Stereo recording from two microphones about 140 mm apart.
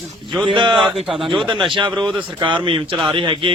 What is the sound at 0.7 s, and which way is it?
Speech, centre (ahead or behind).